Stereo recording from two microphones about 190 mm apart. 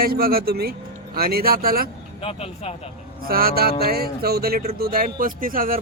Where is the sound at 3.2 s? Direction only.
50° right (ahead or behind).